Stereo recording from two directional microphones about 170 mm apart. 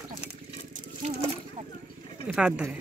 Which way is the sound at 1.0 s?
40° right (ahead or behind).